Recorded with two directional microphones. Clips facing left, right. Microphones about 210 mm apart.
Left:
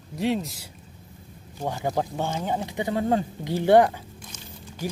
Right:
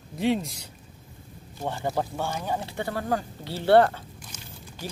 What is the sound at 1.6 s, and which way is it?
Speech, 15° left (ahead or behind).